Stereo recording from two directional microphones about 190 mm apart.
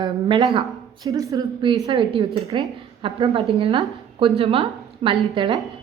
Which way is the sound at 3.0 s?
30° right (ahead or behind).